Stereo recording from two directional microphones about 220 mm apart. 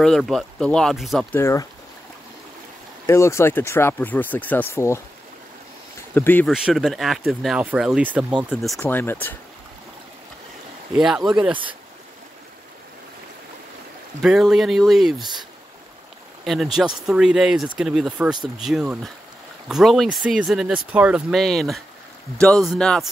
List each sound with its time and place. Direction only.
0.0 s speech: centre (ahead or behind)
1.4 s speech: 15° left (ahead or behind)
3.1 s speech: 10° left (ahead or behind)
8.7 s speech: 10° left (ahead or behind)
11.0 s speech: centre (ahead or behind)
14.2 s speech: centre (ahead or behind)
16.4 s speech: centre (ahead or behind)